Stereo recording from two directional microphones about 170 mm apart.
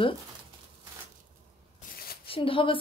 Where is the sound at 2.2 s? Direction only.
30° left (ahead or behind).